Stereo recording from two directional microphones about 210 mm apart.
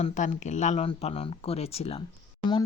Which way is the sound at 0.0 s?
35° left (ahead or behind).